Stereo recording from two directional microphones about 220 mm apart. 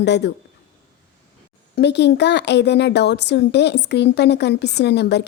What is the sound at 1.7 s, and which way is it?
Speech, 50° left (ahead or behind).